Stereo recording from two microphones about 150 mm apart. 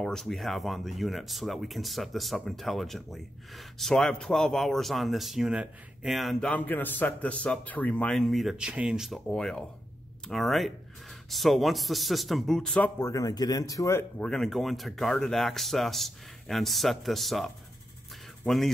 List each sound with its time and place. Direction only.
0.0 s speech: 5° left (ahead or behind)
13.1 s speech: 25° left (ahead or behind)
14.1 s speech: 5° left (ahead or behind)